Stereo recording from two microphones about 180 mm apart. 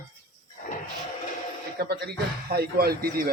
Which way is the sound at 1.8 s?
60° right (ahead or behind).